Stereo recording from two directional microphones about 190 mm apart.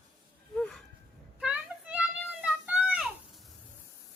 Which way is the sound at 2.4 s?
5° right (ahead or behind).